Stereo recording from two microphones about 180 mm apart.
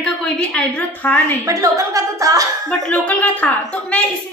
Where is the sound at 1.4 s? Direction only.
20° right (ahead or behind).